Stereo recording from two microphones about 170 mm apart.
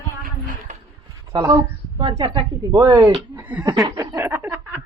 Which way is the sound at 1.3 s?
25° right (ahead or behind).